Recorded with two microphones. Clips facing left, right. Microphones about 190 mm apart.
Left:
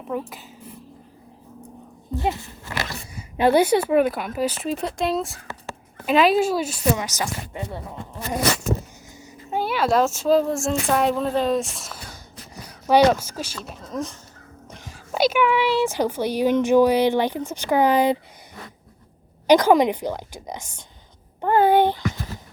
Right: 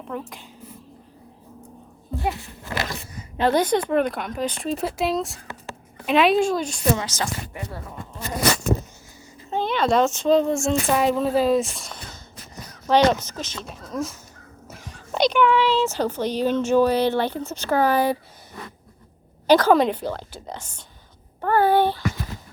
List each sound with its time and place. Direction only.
0.1 s speech: 5° left (ahead or behind)
3.2 s speech: 10° left (ahead or behind)
9.5 s speech: 10° left (ahead or behind)
19.5 s speech: 15° left (ahead or behind)
21.4 s a sound: 15° left (ahead or behind)